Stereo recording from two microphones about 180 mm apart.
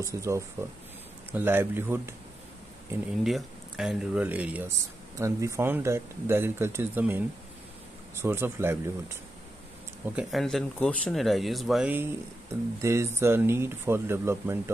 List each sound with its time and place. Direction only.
0.0 s speech: 15° right (ahead or behind)
3.3 s speech: centre (ahead or behind)
10.1 s speech: centre (ahead or behind)